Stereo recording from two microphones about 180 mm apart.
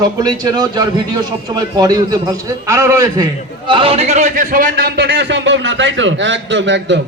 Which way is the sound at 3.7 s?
30° right (ahead or behind).